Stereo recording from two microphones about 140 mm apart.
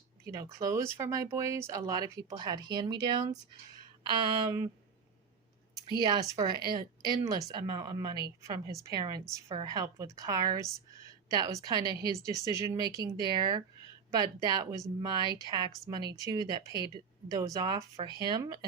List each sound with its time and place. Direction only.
0.6 s speech: 20° right (ahead or behind)
6.0 s speech: 30° right (ahead or behind)